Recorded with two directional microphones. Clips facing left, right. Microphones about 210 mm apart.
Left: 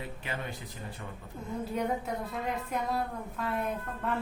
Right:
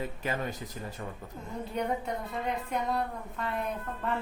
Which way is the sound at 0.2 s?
40° right (ahead or behind).